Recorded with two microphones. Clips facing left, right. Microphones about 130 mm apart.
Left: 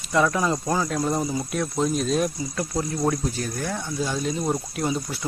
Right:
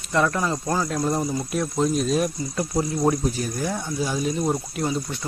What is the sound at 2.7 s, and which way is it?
Speech, 15° right (ahead or behind).